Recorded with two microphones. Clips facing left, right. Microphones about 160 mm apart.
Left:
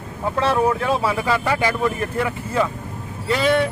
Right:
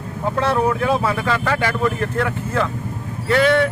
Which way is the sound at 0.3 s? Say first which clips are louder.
Even; centre (ahead or behind).